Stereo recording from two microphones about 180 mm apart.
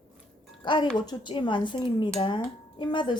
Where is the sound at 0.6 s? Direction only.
25° left (ahead or behind).